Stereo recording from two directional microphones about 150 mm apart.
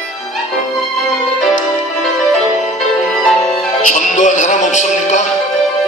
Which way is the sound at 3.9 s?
55° left (ahead or behind).